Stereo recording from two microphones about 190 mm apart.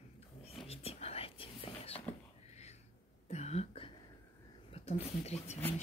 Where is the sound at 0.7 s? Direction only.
30° left (ahead or behind).